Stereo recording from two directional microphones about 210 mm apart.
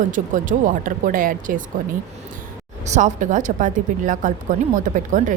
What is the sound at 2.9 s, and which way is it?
Speech, 35° right (ahead or behind).